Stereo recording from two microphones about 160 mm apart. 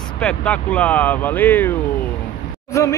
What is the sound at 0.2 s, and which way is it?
A man's voice, 5° left (ahead or behind).